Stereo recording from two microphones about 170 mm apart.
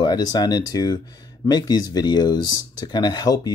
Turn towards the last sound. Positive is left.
turn(degrees=25)  # may be behind; listen again after turning